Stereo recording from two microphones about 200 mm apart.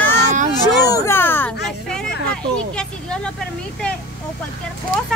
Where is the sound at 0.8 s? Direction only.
15° left (ahead or behind).